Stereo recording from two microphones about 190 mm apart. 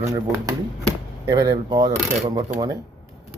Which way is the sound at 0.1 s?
15° right (ahead or behind).